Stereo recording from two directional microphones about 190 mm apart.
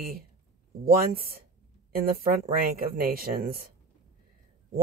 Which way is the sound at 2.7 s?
50° right (ahead or behind).